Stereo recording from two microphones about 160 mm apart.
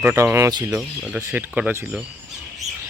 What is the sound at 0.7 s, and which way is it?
Speech, 5° right (ahead or behind).